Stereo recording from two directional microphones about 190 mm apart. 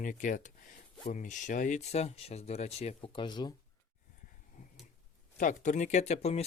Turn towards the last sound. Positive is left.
turn(degrees=35)  # may be behind; listen again after turning